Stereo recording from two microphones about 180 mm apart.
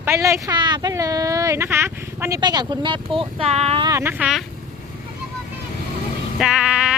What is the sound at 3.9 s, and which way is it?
Speech, 15° right (ahead or behind).